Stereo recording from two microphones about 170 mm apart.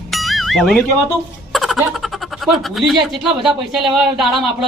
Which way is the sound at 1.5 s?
Centre (ahead or behind).